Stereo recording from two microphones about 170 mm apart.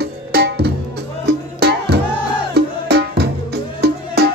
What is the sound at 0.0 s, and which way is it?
Music, 70° right (ahead or behind).